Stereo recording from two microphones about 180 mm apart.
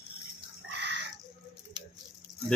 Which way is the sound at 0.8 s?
75° right (ahead or behind).